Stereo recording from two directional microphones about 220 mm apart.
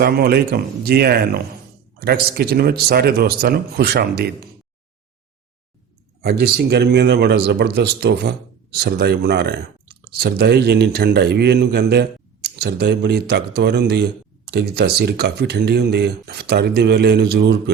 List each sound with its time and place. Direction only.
0.0 s speech: 45° right (ahead or behind)
6.2 s speech: 50° right (ahead or behind)